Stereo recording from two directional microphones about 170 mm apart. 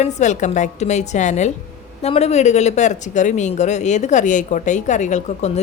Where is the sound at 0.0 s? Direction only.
45° left (ahead or behind).